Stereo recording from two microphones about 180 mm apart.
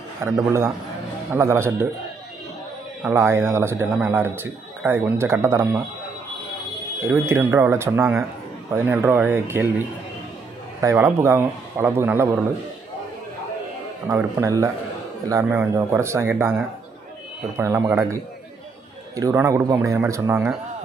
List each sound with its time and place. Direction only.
0.2 s a man's voice: 15° right (ahead or behind)
3.0 s a man's voice: 15° right (ahead or behind)
7.0 s a man's voice: 15° right (ahead or behind)
14.0 s a man's voice: 15° right (ahead or behind)
19.1 s a man's voice: 15° right (ahead or behind)